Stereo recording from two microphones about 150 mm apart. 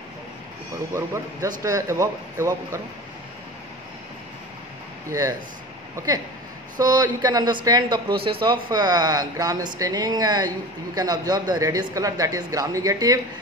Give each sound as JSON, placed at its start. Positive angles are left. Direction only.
{"t": 0.9, "sound": "speech", "side_deg": -20}
{"t": 5.9, "sound": "speech", "side_deg": -25}